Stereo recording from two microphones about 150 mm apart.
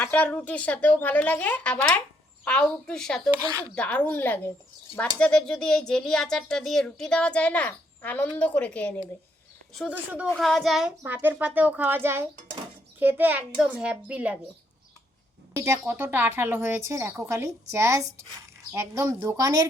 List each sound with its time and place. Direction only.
0.0 s speech: 10° left (ahead or behind)
9.9 s a woman's voice: 10° right (ahead or behind)
10.3 s speech: centre (ahead or behind)
11.0 s a woman's voice: 15° right (ahead or behind)
15.5 s a woman's voice: 20° right (ahead or behind)